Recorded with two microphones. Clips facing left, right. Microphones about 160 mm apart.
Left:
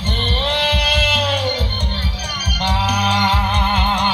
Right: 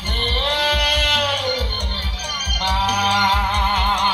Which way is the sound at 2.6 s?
20° left (ahead or behind).